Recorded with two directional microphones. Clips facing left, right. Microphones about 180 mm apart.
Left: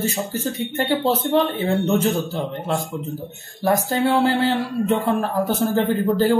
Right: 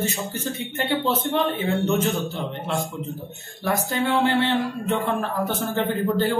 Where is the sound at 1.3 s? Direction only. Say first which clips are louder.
Left 4 dB; 35° left (ahead or behind).